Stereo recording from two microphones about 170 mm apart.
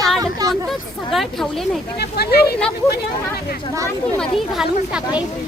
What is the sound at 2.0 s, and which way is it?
Speech, 70° left (ahead or behind).